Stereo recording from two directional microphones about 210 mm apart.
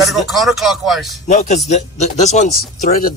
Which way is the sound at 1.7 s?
35° left (ahead or behind).